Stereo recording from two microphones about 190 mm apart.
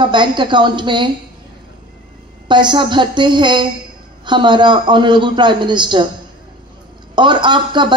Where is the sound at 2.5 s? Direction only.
25° right (ahead or behind).